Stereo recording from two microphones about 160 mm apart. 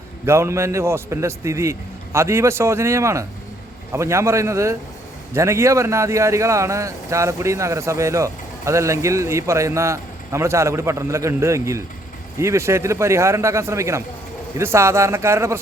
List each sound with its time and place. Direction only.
0.3 s a man's voice: 15° right (ahead or behind)